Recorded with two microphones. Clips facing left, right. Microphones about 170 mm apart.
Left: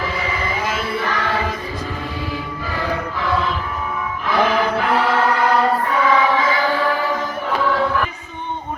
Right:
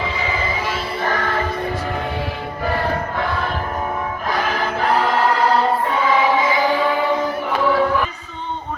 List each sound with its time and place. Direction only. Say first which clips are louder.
1.0 s music: right 1 dB; 45° right (ahead or behind)
4.3 s choir: left 5 dB; 40° right (ahead or behind); by 6.7 s 20° right (ahead or behind)
7.6 s music: right 3 dB; 10° right (ahead or behind)